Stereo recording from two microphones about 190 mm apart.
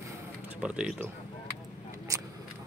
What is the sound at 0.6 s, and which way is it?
Speech, 5° right (ahead or behind).